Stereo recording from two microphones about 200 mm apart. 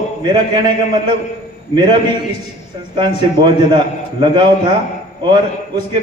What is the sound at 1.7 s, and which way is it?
Speech, 25° right (ahead or behind).